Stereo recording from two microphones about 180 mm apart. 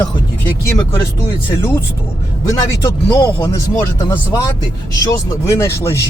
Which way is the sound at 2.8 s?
15° left (ahead or behind).